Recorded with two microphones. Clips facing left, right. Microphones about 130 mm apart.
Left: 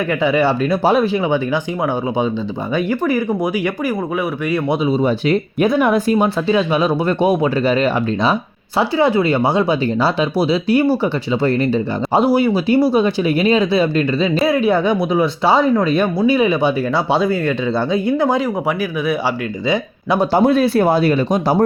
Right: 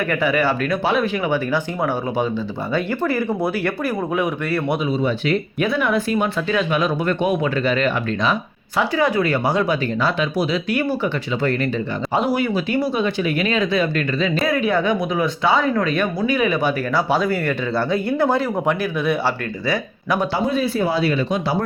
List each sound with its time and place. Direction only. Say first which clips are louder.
0.1 s speech: left 5 dB; 20° left (ahead or behind)
2.7 s speech: left 3 dB; 15° left (ahead or behind)
4.9 s speech: left 4 dB; 40° left (ahead or behind); by 20.1 s 20° left (ahead or behind)
20.4 s speech: left 7 dB; 70° left (ahead or behind); by 21.4 s 45° left (ahead or behind)